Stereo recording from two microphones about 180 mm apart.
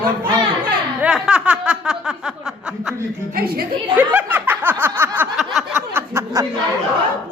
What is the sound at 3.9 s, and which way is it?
Snicker, 10° right (ahead or behind).